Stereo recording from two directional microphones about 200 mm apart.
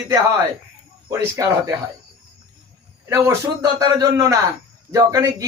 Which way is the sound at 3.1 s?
15° right (ahead or behind).